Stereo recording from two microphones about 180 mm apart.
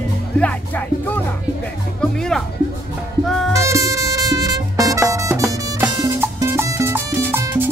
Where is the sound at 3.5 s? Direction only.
15° right (ahead or behind).